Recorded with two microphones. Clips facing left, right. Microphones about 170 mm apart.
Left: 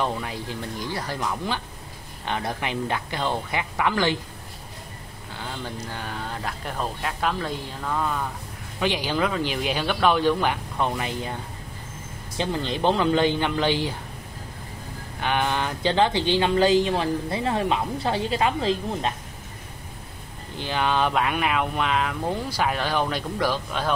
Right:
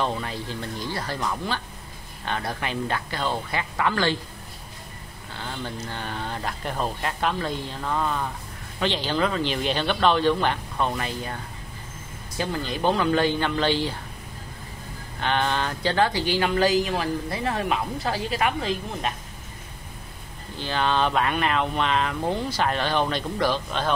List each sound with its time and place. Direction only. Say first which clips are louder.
0.0 s speech: even; 10° left (ahead or behind)
5.3 s speech: even; 10° left (ahead or behind)
8.7 s speech: even; 10° left (ahead or behind)
12.4 s speech: left 2 dB; 25° left (ahead or behind)
15.1 s speech: even; 10° left (ahead or behind); by 19.1 s 30° left (ahead or behind)
20.5 s speech: even; 15° left (ahead or behind)